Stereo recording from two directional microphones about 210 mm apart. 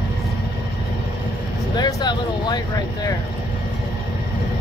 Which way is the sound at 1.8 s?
20° left (ahead or behind).